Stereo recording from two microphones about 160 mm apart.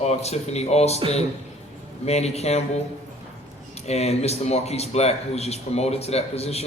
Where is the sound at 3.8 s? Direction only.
40° left (ahead or behind).